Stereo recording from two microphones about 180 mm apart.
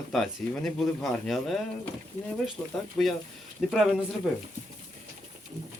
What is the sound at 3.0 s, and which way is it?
Speech, 5° left (ahead or behind).